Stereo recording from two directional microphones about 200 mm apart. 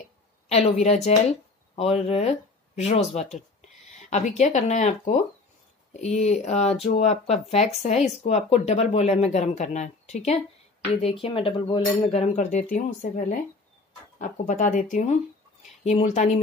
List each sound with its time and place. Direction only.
0.5 s speech: 30° left (ahead or behind)